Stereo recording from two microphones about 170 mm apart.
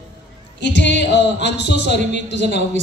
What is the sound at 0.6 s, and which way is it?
A woman's voice, 90° left.